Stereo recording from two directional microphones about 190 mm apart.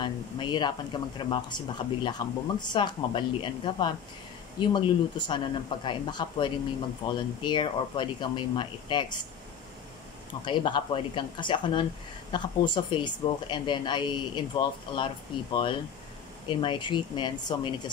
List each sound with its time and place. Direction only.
0.0 s speech: 25° left (ahead or behind)
10.4 s speech: 25° left (ahead or behind)